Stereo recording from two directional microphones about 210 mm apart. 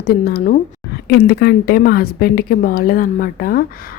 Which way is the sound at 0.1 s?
45° left (ahead or behind).